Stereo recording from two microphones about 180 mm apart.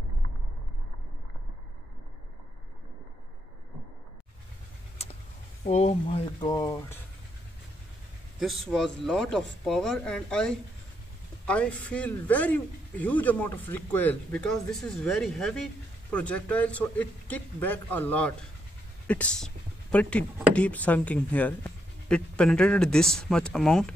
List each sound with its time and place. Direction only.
5.6 s speech: 35° left (ahead or behind); by 7.0 s 20° left (ahead or behind)
8.4 s speech: centre (ahead or behind)